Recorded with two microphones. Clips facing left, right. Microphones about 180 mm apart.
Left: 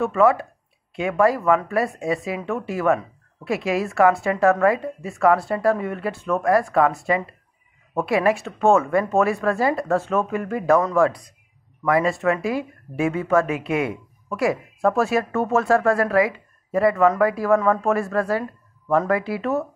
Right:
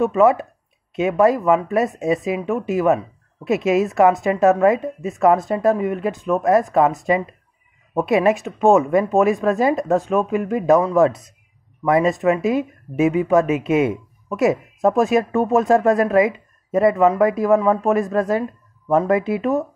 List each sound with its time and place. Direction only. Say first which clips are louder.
0.0 s speech: right 3 dB; 20° right (ahead or behind)